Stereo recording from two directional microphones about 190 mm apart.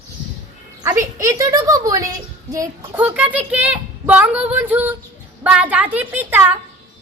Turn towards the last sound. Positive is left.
turn(degrees=-10)  # may be behind; listen again after turning